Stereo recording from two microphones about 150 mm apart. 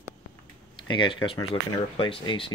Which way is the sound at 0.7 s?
30° left (ahead or behind).